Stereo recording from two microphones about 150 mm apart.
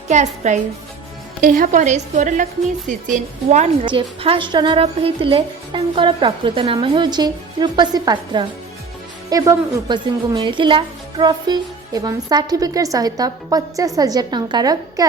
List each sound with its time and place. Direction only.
0.1 s a woman's voice: 50° right (ahead or behind)
1.4 s a woman's voice: 70° right (ahead or behind)
3.8 s a woman's voice: 35° right (ahead or behind)